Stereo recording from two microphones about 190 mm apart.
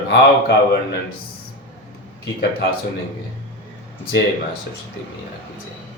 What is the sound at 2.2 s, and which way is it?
Speech, 65° left (ahead or behind).